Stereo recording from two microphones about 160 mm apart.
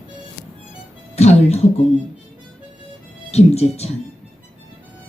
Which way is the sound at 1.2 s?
45° left (ahead or behind).